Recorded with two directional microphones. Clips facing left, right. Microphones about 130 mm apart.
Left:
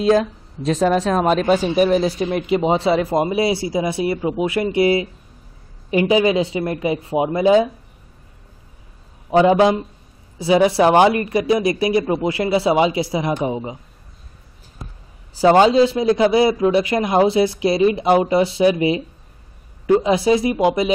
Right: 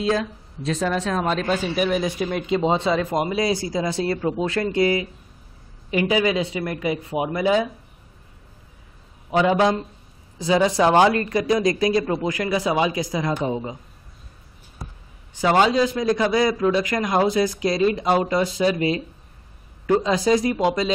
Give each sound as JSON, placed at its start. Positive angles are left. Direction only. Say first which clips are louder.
{"t": 0.1, "sound": "speech", "louder": "left 7 dB", "side_deg": 40}
{"t": 1.2, "sound": "speech", "louder": "left 6 dB", "side_deg": 20}
{"t": 1.8, "sound": "speech", "louder": "left 6 dB", "side_deg": 35}
{"t": 2.5, "sound": "a man's voice", "louder": "left 3 dB", "side_deg": 20}
{"t": 9.3, "sound": "a man's voice", "louder": "left 5 dB", "side_deg": 25}
{"t": 15.3, "sound": "a man's voice", "louder": "left 6 dB", "side_deg": 25}
{"t": 20.2, "sound": "a man's voice", "louder": "left 3 dB", "side_deg": 25}